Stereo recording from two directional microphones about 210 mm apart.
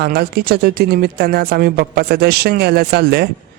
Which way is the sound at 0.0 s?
50° right (ahead or behind).